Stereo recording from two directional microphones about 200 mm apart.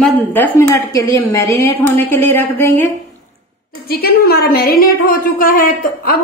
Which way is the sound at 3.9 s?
50° left (ahead or behind).